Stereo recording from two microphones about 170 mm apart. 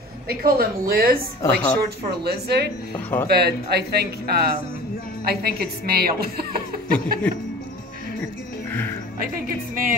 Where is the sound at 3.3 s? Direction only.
70° right (ahead or behind).